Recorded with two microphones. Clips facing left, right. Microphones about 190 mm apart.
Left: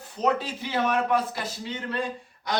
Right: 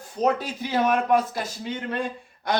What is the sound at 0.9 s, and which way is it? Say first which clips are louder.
A man's voice: right 3 dB; 50° right (ahead or behind).